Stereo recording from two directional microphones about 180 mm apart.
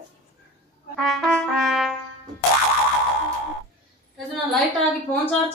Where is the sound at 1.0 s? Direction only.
Centre (ahead or behind).